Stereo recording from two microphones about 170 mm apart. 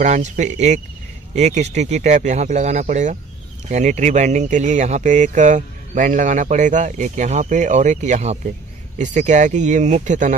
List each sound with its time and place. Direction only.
0.0 s speech: 45° right (ahead or behind)